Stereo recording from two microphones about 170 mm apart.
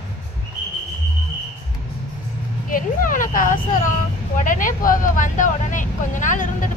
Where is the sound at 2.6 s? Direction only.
55° left (ahead or behind).